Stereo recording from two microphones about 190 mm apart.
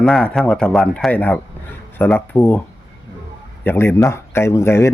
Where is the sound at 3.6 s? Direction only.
10° left (ahead or behind).